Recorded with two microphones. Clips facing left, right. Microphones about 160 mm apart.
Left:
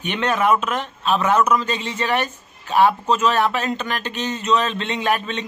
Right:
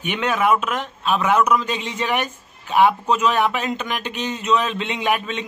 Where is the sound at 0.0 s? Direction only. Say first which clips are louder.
Even; 10° right (ahead or behind).